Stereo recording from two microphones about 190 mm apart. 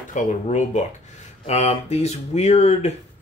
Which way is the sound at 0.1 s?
40° left (ahead or behind).